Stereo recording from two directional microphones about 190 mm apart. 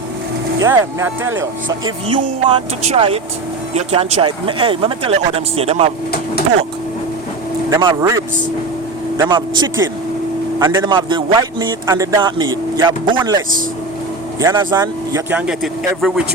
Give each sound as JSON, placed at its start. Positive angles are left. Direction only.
{"t": 0.6, "sound": "speech", "side_deg": -15}
{"t": 2.0, "sound": "speech", "side_deg": -25}
{"t": 7.7, "sound": "speech", "side_deg": -20}
{"t": 10.8, "sound": "speech", "side_deg": -25}
{"t": 15.3, "sound": "speech", "side_deg": -5}